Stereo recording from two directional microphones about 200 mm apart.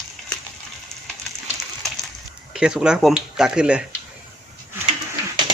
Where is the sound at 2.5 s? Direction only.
5° right (ahead or behind).